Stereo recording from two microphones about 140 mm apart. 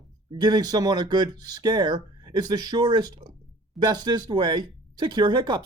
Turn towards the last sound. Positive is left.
turn(degrees=-30)  # may be behind; listen again after turning